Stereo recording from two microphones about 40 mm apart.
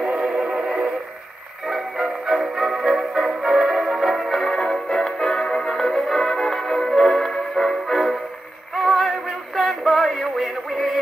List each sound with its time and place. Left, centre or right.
0.0 s music: right
1.7 s music: centre
4.5 s music: centre
8.7 s a sound: centre
9.6 s synthetic singing: centre